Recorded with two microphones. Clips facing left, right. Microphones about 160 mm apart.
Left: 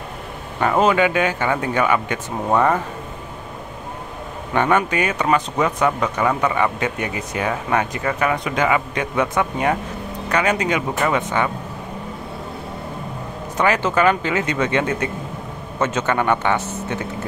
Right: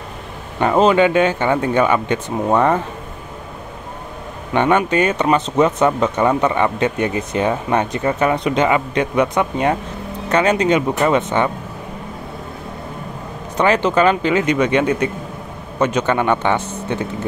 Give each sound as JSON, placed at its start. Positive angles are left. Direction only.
{"t": 0.6, "sound": "speech", "side_deg": -20}
{"t": 4.6, "sound": "speech", "side_deg": -20}
{"t": 13.6, "sound": "speech", "side_deg": -20}